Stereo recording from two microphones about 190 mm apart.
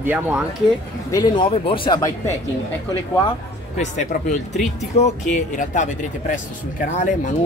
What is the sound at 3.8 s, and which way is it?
Speech, 40° left (ahead or behind).